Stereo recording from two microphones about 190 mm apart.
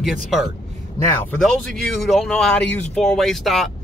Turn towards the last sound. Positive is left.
turn(degrees=0)  # may be behind; listen again after turning